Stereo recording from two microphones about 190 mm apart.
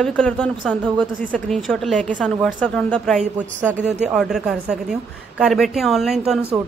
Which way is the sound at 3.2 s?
40° right (ahead or behind).